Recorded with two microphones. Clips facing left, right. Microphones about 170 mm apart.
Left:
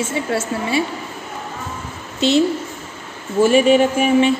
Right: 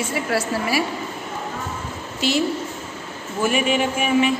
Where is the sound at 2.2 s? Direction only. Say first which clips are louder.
Left 6 dB; 25° left (ahead or behind).